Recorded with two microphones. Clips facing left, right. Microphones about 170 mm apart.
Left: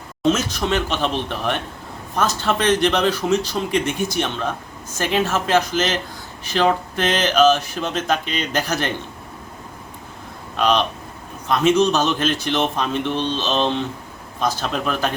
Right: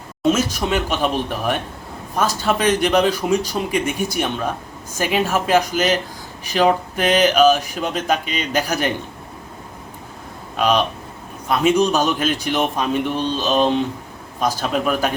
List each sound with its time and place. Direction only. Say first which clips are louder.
0.2 s speech: right 1 dB; 10° right (ahead or behind)
10.6 s speech: right 1 dB; 5° right (ahead or behind)